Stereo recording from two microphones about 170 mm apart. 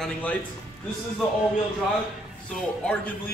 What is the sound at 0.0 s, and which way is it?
Speech, 10° left (ahead or behind).